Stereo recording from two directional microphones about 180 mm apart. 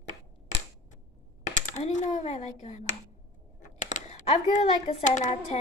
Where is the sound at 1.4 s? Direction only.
45° left (ahead or behind).